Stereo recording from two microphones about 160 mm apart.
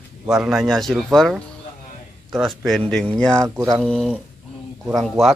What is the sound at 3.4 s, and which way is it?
Speech, 20° right (ahead or behind).